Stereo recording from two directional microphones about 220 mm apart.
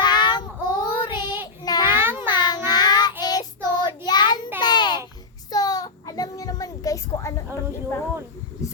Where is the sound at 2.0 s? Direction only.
10° right (ahead or behind).